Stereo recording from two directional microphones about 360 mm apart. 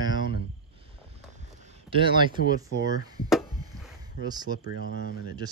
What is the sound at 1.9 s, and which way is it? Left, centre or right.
Speech, centre.